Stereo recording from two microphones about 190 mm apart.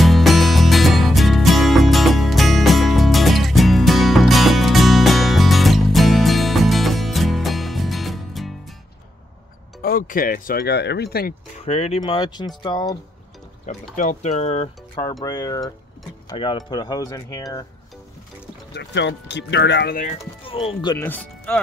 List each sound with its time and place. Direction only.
0.0 s music: centre (ahead or behind)
9.8 s speech: 50° left (ahead or behind)
11.5 s speech: 35° left (ahead or behind)
12.0 s speech: 25° left (ahead or behind)
13.9 s speech: 40° left (ahead or behind)
15.2 s speech: 20° left (ahead or behind)
18.7 s speech: 65° left (ahead or behind)
20.1 s speech: 30° left (ahead or behind)
21.0 s speech: 10° left (ahead or behind)